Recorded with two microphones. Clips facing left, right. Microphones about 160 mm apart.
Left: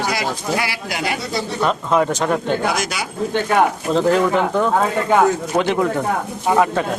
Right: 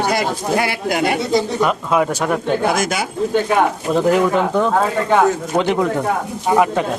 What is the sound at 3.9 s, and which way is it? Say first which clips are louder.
Speech: right 1 dB; 15° right (ahead or behind).